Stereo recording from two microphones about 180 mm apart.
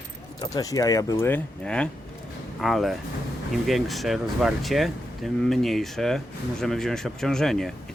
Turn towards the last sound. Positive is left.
turn(degrees=0)  # may be behind; listen again after turning